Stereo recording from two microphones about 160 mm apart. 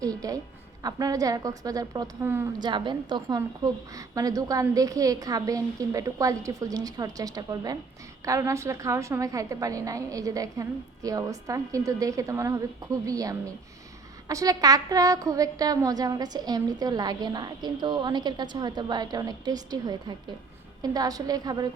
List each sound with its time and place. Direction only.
0.0 s a sound: 20° right (ahead or behind)
0.8 s a woman's voice: 25° right (ahead or behind)
2.6 s a woman's voice: 30° right (ahead or behind)